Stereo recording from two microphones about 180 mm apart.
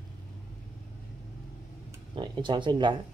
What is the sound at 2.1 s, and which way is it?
Speech, 25° right (ahead or behind).